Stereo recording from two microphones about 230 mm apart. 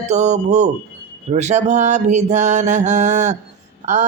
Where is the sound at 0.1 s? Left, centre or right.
Right.